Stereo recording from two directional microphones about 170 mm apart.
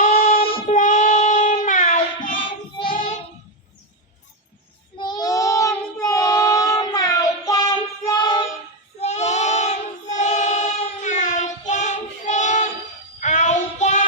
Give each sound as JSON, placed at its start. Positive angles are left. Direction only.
{"t": 0.7, "sound": "child singing", "side_deg": 45}
{"t": 1.6, "sound": "music", "side_deg": 50}
{"t": 2.4, "sound": "child singing", "side_deg": 30}
{"t": 4.9, "sound": "child singing", "side_deg": 25}
{"t": 9.0, "sound": "child singing", "side_deg": 40}